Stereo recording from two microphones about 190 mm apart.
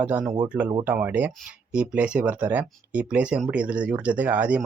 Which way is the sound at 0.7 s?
20° right (ahead or behind).